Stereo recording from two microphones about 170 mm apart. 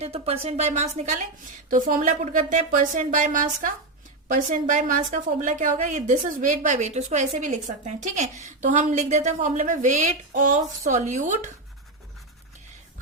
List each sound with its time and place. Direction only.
0.0 s a woman's voice: 35° right (ahead or behind)